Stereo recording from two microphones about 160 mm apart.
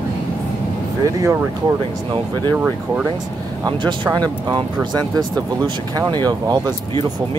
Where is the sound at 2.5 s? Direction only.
5° right (ahead or behind).